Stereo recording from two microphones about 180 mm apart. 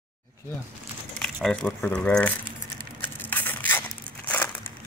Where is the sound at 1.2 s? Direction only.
5° left (ahead or behind).